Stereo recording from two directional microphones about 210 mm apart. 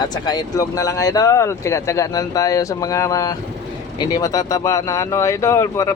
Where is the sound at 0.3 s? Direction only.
15° left (ahead or behind).